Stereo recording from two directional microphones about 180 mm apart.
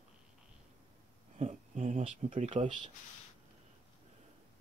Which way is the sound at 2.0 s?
40° right (ahead or behind).